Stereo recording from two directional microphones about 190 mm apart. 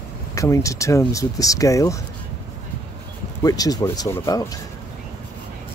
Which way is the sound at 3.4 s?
20° left (ahead or behind).